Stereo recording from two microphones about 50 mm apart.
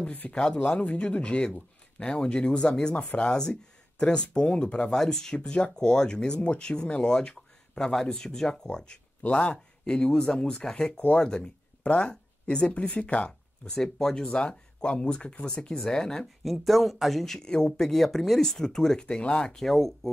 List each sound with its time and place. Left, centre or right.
0.0 s speech: left
4.9 s speech: centre
10.3 s speech: centre
13.7 s speech: centre
14.2 s speech: left
16.4 s speech: centre
19.6 s speech: centre